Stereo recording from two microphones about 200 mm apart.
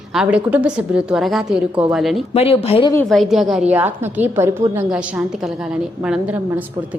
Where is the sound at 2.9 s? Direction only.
5° left (ahead or behind).